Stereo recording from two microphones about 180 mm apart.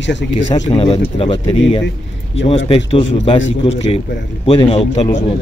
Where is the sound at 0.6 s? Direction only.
30° left (ahead or behind).